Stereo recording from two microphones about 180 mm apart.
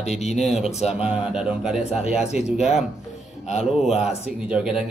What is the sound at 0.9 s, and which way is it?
A man's voice, 5° right (ahead or behind).